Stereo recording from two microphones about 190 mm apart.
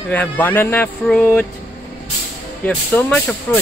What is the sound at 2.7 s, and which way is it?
Speech, 5° left (ahead or behind).